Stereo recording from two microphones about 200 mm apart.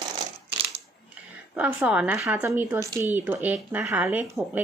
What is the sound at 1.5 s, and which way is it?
Speech, 5° right (ahead or behind).